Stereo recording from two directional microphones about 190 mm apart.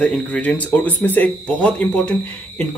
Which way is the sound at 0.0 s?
5° left (ahead or behind).